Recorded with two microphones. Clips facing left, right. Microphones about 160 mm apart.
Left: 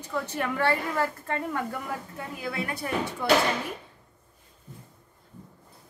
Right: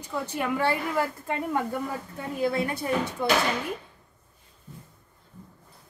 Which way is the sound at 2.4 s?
25° right (ahead or behind).